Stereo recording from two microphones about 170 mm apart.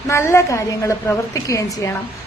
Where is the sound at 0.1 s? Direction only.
15° left (ahead or behind).